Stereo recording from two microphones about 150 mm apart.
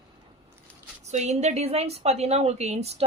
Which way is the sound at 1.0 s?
50° right (ahead or behind).